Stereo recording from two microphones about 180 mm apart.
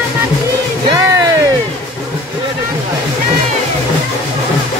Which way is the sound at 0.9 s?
15° right (ahead or behind).